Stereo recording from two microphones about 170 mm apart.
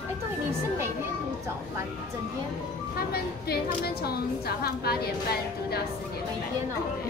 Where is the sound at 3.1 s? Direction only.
65° left (ahead or behind).